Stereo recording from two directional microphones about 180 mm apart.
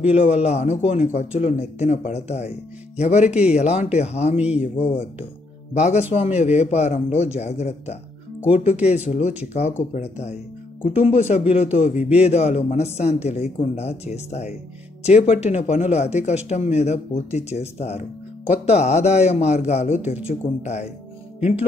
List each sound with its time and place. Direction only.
0.1 s speech: 35° left (ahead or behind)
11.9 s speech: 5° right (ahead or behind)
12.2 s speech: 35° left (ahead or behind)